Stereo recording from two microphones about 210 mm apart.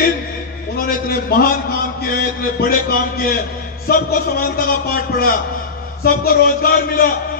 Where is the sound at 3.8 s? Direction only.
45° left (ahead or behind).